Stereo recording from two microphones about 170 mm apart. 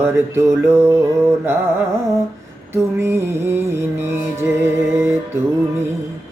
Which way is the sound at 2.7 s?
15° right (ahead or behind).